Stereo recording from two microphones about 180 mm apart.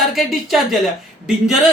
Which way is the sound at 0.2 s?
Centre (ahead or behind).